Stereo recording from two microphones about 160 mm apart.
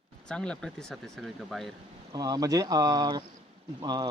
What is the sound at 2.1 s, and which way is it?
A man's voice, 25° right (ahead or behind).